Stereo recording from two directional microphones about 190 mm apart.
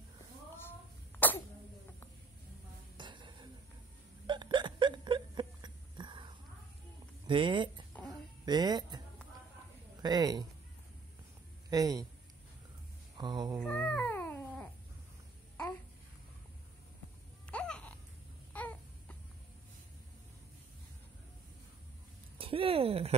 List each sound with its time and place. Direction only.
3.0 s music: 25° right (ahead or behind)
4.3 s hiccup: 25° right (ahead or behind)
7.2 s speech: 25° right (ahead or behind)
8.1 s a sound: 20° right (ahead or behind)
10.0 s a man's voice: 20° right (ahead or behind)
11.7 s a man's voice: 20° right (ahead or behind)
13.2 s cat: 20° right (ahead or behind)
13.6 s cat: 5° left (ahead or behind)
17.5 s a sound: 5° left (ahead or behind)
18.5 s baby cry: 10° left (ahead or behind)
22.4 s a sound: 30° right (ahead or behind)